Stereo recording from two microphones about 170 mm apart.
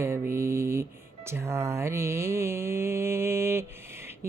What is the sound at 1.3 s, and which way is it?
Mantra, 15° right (ahead or behind).